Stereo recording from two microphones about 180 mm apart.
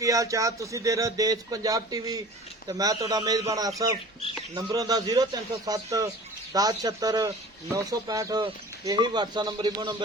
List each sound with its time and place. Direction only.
0.0 s speech: 15° right (ahead or behind)